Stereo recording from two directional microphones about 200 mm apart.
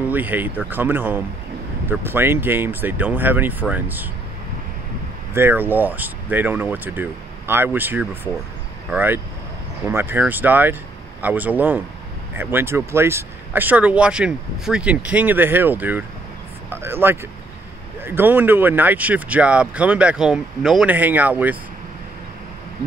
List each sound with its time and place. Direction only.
0.1 s speech: 10° right (ahead or behind)
5.3 s speech: 10° right (ahead or behind)